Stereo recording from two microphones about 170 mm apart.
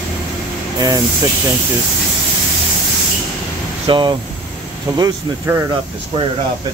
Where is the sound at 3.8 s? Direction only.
30° right (ahead or behind).